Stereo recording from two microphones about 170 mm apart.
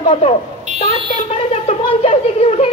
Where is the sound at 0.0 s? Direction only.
30° left (ahead or behind).